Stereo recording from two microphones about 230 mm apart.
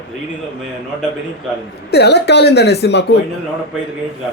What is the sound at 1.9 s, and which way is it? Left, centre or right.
Speech, left.